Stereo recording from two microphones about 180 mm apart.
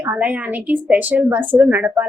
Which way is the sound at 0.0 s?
5° right (ahead or behind).